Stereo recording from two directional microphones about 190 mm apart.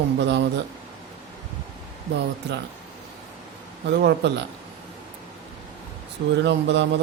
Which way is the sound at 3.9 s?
65° right (ahead or behind).